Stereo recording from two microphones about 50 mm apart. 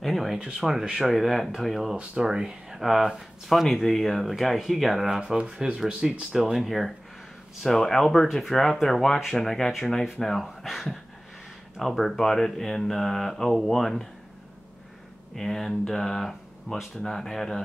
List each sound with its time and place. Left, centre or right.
0.0 s a sound: centre
0.4 s speech: centre
2.0 s speech: centre
5.2 s speech: centre
6.3 s speech: centre
15.3 s speech: centre